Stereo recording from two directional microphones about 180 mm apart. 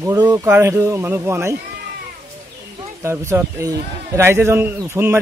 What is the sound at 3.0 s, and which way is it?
A man's voice, 15° right (ahead or behind).